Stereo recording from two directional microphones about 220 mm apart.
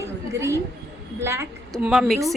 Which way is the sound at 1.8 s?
Centre (ahead or behind).